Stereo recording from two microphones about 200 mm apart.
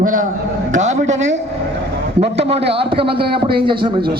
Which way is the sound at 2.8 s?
25° right (ahead or behind).